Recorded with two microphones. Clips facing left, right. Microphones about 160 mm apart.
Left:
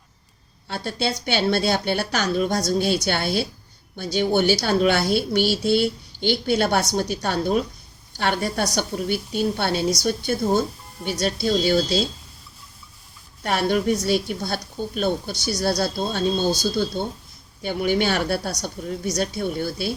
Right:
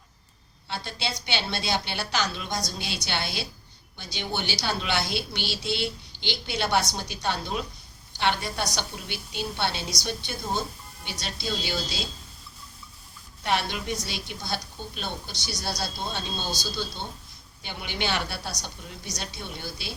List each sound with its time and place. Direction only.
0.7 s a woman's voice: 50° left (ahead or behind)
13.4 s a woman's voice: 50° left (ahead or behind)